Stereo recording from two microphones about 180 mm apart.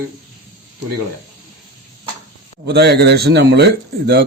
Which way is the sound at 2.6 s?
65° right (ahead or behind).